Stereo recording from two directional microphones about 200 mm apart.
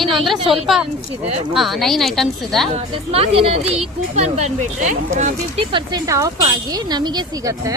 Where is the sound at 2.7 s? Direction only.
30° right (ahead or behind).